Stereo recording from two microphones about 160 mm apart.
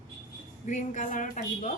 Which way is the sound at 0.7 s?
50° left (ahead or behind).